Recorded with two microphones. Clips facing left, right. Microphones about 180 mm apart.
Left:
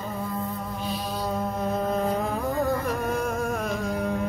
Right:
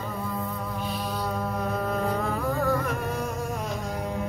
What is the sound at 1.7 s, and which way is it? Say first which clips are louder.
Music: left 3 dB; 20° left (ahead or behind).